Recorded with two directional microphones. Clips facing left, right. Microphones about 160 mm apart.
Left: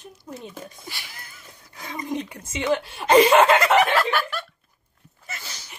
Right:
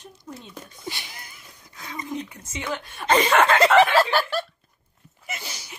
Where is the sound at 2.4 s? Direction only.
15° left (ahead or behind).